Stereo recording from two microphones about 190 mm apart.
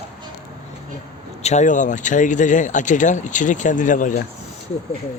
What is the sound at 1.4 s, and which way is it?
Speech, 40° left (ahead or behind).